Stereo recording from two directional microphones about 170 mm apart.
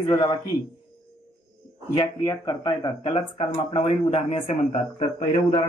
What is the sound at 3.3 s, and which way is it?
Speech, 30° left (ahead or behind).